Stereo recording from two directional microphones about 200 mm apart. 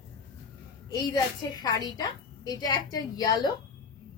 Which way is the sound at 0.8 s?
20° left (ahead or behind).